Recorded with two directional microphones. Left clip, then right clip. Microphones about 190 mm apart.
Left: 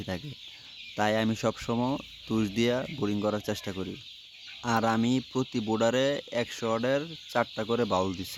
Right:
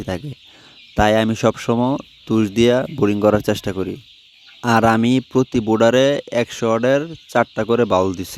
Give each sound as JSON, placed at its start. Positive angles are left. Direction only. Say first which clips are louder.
{"t": 0.1, "sound": "speech", "louder": "right 9 dB", "side_deg": -45}